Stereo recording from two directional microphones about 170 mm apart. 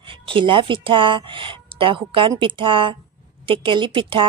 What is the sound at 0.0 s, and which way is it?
Speech, 30° right (ahead or behind).